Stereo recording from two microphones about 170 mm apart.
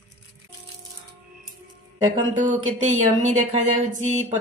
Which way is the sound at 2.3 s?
50° right (ahead or behind).